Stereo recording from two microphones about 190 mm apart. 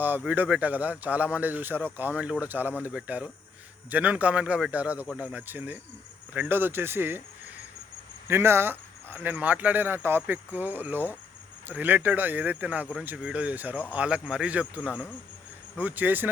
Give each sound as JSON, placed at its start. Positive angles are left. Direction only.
{"t": 0.0, "sound": "speech", "side_deg": -10}
{"t": 8.3, "sound": "speech", "side_deg": -15}